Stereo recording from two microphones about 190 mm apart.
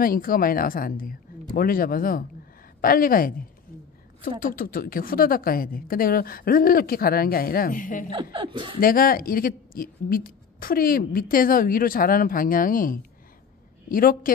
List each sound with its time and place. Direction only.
0.0 s speech: 50° left (ahead or behind)
8.1 s speech: 25° right (ahead or behind)
8.7 s speech: 50° left (ahead or behind)